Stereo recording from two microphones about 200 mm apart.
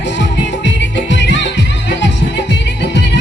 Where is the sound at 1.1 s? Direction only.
60° left (ahead or behind).